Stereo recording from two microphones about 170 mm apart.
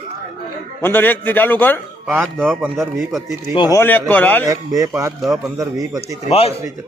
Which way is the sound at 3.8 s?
10° left (ahead or behind).